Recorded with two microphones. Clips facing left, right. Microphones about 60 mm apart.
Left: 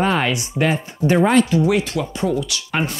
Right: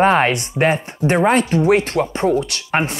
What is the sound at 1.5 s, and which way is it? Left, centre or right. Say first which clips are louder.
Speech: right 3 dB; right.